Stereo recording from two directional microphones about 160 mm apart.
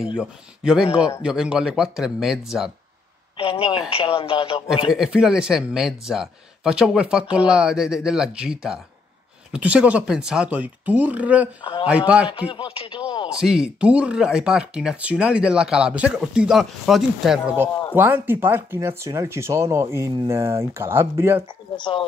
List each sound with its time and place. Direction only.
0.0 s speech: 5° right (ahead or behind)
3.3 s speech: 35° left (ahead or behind)
4.9 s speech: 5° right (ahead or behind)
12.4 s speech: 35° left (ahead or behind)
13.4 s speech: 5° right (ahead or behind)
17.9 s speech: 10° right (ahead or behind)
21.7 s speech: 30° left (ahead or behind)